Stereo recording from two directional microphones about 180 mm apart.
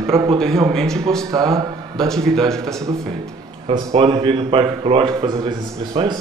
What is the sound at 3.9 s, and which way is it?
A man's voice, 20° right (ahead or behind).